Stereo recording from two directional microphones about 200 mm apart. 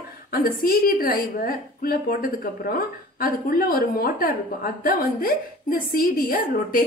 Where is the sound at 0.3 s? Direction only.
45° left (ahead or behind).